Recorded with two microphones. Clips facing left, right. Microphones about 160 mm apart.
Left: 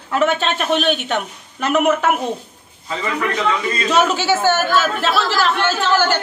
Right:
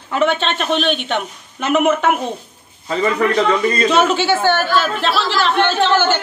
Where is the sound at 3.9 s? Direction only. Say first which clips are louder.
Left 2 dB; centre (ahead or behind).